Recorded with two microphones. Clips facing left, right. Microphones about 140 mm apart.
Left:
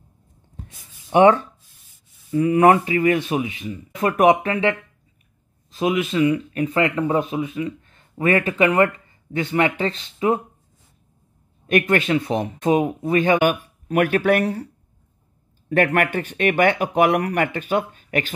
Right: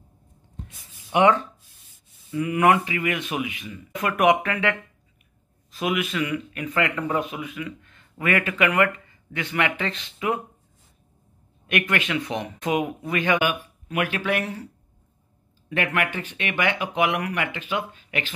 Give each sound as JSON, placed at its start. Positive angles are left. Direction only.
{"t": 1.1, "sound": "speech", "side_deg": 30}
{"t": 2.3, "sound": "speech", "side_deg": 30}
{"t": 11.6, "sound": "speech", "side_deg": 35}
{"t": 15.7, "sound": "speech", "side_deg": 45}